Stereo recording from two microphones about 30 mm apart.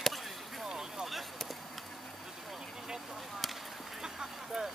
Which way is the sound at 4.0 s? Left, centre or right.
Right.